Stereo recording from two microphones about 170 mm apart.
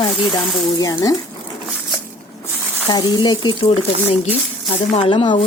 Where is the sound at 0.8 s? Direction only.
20° left (ahead or behind).